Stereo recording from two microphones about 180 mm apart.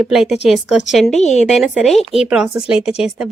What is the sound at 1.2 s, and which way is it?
Speech, 40° left (ahead or behind).